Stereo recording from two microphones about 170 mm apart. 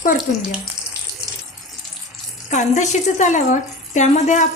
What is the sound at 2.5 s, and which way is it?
Speech, 45° left (ahead or behind).